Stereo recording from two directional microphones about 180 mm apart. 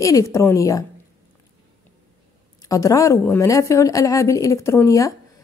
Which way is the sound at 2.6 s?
20° left (ahead or behind).